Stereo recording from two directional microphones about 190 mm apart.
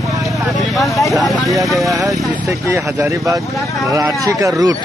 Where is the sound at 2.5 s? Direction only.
15° right (ahead or behind).